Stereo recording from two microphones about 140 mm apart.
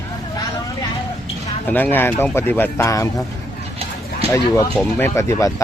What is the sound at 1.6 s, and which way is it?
Speech, 10° left (ahead or behind).